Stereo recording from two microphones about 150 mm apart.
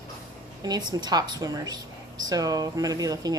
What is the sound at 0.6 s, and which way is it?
Speech, 25° right (ahead or behind).